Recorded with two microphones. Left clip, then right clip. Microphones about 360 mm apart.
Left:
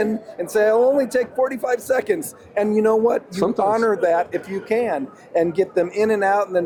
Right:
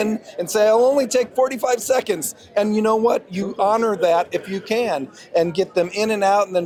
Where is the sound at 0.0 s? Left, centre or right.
Right.